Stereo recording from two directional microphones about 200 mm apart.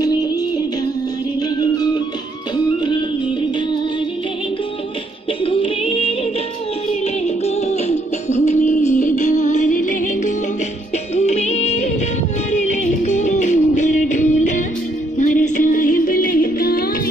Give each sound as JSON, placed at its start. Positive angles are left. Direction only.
{"t": 0.0, "sound": "music", "side_deg": 20}
{"t": 2.5, "sound": "music", "side_deg": 20}
{"t": 5.4, "sound": "music", "side_deg": 25}